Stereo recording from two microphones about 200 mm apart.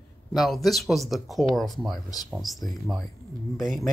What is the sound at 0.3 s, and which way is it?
Speech, centre (ahead or behind).